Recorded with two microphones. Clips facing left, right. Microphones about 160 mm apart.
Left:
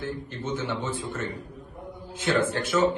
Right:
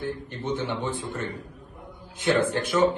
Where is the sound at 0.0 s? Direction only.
20° right (ahead or behind).